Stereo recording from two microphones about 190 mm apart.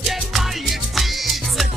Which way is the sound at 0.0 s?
Centre (ahead or behind).